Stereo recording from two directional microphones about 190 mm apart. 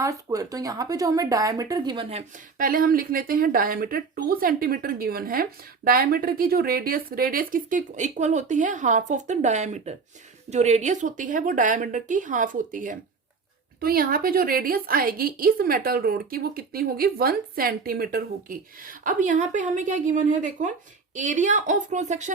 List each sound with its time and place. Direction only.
0.0 s speech: 15° right (ahead or behind)
2.6 s speech: 45° right (ahead or behind)